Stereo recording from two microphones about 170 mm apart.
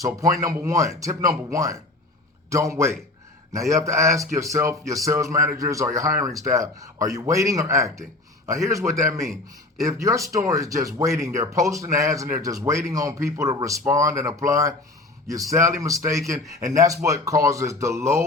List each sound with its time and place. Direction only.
0.0 s speech: 20° right (ahead or behind)